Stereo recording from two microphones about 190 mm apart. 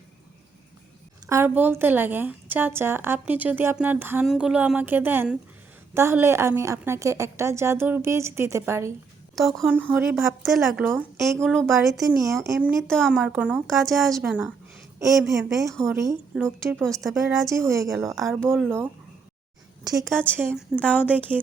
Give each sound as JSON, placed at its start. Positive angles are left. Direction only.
{"t": 1.3, "sound": "a woman's voice", "side_deg": -10}
{"t": 9.3, "sound": "a woman's voice", "side_deg": 0}
{"t": 12.4, "sound": "a woman's voice", "side_deg": -10}
{"t": 12.9, "sound": "a woman's voice", "side_deg": 0}
{"t": 15.9, "sound": "a woman's voice", "side_deg": -15}
{"t": 16.3, "sound": "a woman's voice", "side_deg": 0}
{"t": 17.7, "sound": "a woman's voice", "side_deg": -15}
{"t": 17.9, "sound": "a woman's voice", "side_deg": 0}
{"t": 18.4, "sound": "a woman's voice", "side_deg": -10}
{"t": 20.5, "sound": "a woman's voice", "side_deg": 5}
{"t": 21.1, "sound": "a woman's voice", "side_deg": -10}